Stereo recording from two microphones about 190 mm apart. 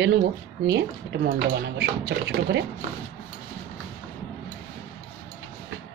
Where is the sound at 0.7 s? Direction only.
60° right (ahead or behind).